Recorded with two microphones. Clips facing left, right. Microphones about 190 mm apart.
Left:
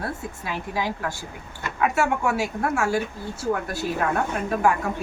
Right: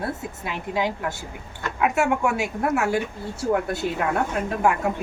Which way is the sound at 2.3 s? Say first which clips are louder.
Right 1 dB; 20° right (ahead or behind).